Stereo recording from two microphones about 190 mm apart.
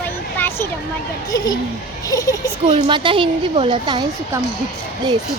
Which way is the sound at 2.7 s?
25° right (ahead or behind).